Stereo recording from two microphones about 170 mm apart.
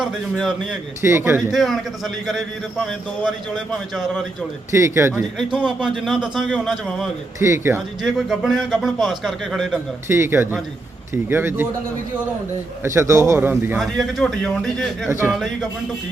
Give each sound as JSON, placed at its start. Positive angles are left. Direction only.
{"t": 0.0, "sound": "a man's voice", "side_deg": 0}
{"t": 1.0, "sound": "a man's voice", "side_deg": -15}
{"t": 1.4, "sound": "a man's voice", "side_deg": 0}
{"t": 4.7, "sound": "a man's voice", "side_deg": -15}
{"t": 5.4, "sound": "a man's voice", "side_deg": -5}
{"t": 7.3, "sound": "a man's voice", "side_deg": -15}
{"t": 7.8, "sound": "a man's voice", "side_deg": 0}
{"t": 10.1, "sound": "a man's voice", "side_deg": -15}
{"t": 12.8, "sound": "a man's voice", "side_deg": -15}
{"t": 13.7, "sound": "a man's voice", "side_deg": 0}